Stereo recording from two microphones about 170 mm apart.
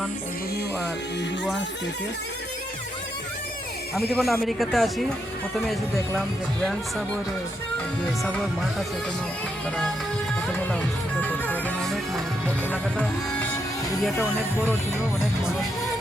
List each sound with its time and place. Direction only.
4.1 s speech: centre (ahead or behind)
8.2 s speech: centre (ahead or behind)
11.2 s music: 10° left (ahead or behind)